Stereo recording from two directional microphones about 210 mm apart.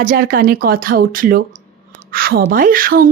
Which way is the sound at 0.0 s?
45° right (ahead or behind).